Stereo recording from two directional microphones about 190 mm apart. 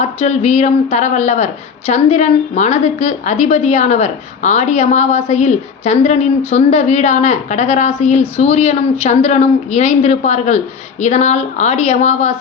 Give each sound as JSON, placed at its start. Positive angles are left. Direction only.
{"t": 0.0, "sound": "a woman's voice", "side_deg": 35}